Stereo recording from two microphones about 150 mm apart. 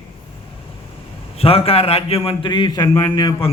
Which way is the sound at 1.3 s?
40° left (ahead or behind).